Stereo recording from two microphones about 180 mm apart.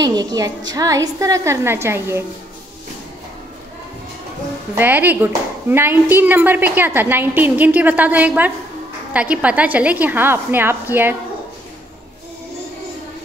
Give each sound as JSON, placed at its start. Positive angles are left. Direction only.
{"t": 0.0, "sound": "a woman's voice", "side_deg": -20}
{"t": 4.7, "sound": "speech", "side_deg": -10}